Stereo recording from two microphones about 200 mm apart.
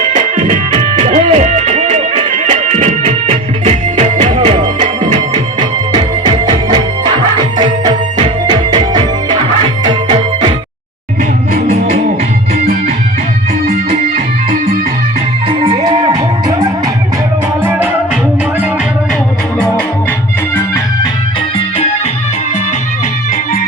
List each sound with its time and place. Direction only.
0.1 s music: 35° right (ahead or behind)
11.5 s music: 40° right (ahead or behind)
15.6 s music: 25° right (ahead or behind)